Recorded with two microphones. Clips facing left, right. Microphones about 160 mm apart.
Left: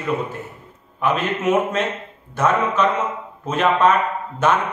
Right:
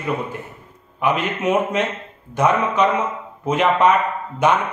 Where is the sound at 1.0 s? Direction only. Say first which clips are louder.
Even; 15° right (ahead or behind).